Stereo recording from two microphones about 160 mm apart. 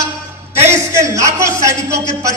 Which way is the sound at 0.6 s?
15° right (ahead or behind).